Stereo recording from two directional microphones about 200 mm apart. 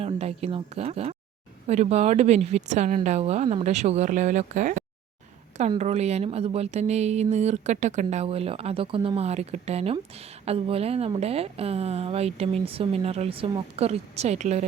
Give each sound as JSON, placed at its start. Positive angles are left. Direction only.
{"t": 0.0, "sound": "speech", "side_deg": -30}